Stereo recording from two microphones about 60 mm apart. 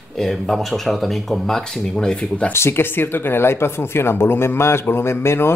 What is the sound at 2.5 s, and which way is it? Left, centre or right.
Speech, left.